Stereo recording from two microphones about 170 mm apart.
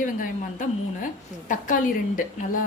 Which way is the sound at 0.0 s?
50° left (ahead or behind).